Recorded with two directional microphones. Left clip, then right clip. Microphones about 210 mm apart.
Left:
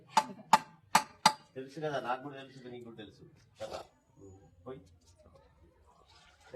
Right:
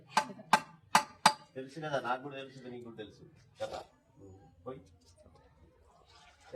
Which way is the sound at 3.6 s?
15° left (ahead or behind).